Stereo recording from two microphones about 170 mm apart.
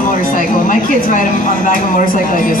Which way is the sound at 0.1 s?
50° left (ahead or behind).